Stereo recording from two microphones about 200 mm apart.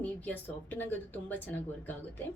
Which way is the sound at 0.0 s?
10° left (ahead or behind).